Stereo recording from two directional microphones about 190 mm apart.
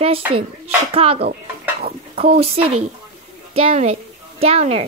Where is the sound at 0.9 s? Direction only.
30° right (ahead or behind).